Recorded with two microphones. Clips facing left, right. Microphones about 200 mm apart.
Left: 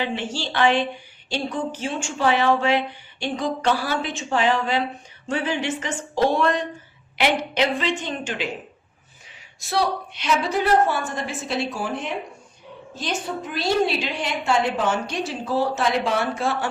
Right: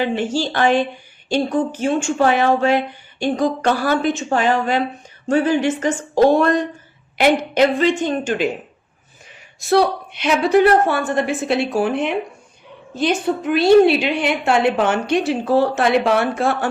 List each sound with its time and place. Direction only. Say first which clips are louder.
0.0 s speech: right 7 dB; 45° right (ahead or behind)
9.6 s a woman's voice: right 8 dB; 55° right (ahead or behind)